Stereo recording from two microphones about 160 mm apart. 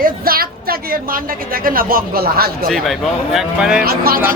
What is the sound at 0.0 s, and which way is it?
A woman's voice, 65° right (ahead or behind).